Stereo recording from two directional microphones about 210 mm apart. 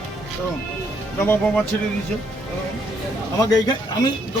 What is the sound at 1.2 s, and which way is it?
Speech, 10° left (ahead or behind).